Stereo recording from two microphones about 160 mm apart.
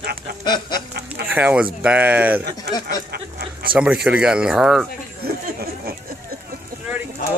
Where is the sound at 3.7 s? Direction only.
5° right (ahead or behind).